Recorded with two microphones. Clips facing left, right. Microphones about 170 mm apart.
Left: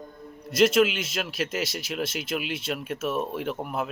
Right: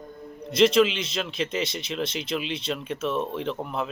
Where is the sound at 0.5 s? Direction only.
5° left (ahead or behind).